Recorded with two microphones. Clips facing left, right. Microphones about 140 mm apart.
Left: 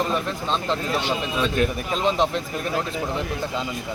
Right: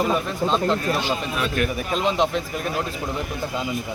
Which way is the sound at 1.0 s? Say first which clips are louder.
Left 1 dB; 20° left (ahead or behind).